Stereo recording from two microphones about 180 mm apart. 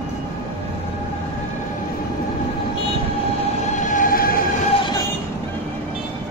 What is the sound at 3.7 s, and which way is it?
Train, 45° left (ahead or behind).